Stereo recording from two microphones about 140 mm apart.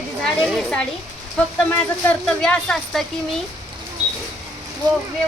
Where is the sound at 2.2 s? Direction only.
5° left (ahead or behind).